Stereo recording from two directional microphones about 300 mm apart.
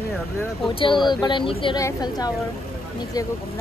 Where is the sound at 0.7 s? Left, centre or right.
Centre.